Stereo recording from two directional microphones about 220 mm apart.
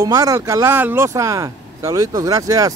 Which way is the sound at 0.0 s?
15° right (ahead or behind).